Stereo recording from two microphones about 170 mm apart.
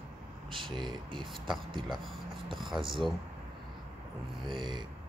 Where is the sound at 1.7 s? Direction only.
25° right (ahead or behind).